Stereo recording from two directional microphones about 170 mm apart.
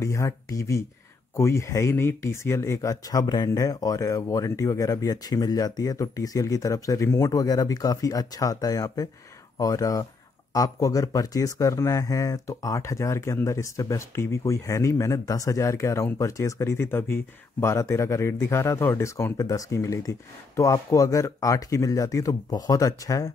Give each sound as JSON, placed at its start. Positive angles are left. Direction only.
{"t": 0.0, "sound": "speech", "side_deg": 20}